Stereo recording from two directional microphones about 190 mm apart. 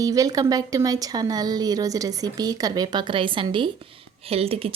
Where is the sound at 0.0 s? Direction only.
20° right (ahead or behind).